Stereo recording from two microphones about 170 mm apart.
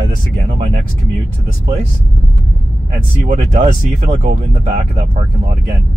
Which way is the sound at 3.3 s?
45° right (ahead or behind).